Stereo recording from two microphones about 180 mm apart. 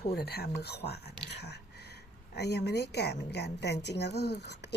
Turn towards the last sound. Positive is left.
turn(degrees=70)  # may be behind; listen again after turning